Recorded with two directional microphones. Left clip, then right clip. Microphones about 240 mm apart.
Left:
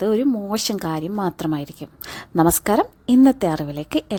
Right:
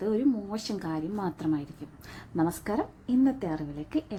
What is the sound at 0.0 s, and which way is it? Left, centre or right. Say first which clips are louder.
A woman's voice: left 8 dB; left.